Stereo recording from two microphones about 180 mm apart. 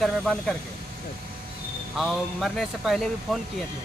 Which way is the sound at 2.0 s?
Centre (ahead or behind).